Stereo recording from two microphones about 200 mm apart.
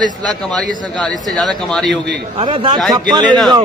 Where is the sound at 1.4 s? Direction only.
Centre (ahead or behind).